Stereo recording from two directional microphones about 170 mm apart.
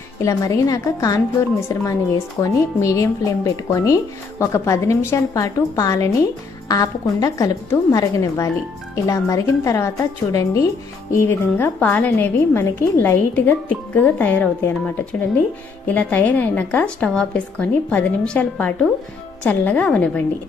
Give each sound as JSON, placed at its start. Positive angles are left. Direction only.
{"t": 0.2, "sound": "a woman's voice", "side_deg": 20}